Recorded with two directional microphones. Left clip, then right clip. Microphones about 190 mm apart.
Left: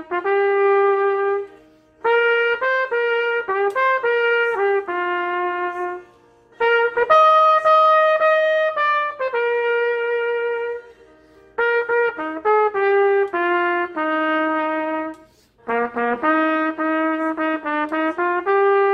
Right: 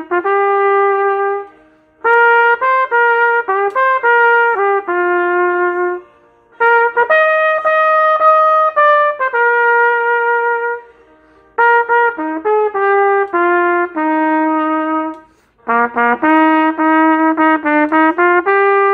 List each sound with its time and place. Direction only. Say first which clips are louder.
0.1 s trumpet: right 5 dB; 40° right (ahead or behind)
11.5 s trumpet: right 8 dB; 35° right (ahead or behind)
15.6 s brass instrument: right 8 dB; 45° right (ahead or behind)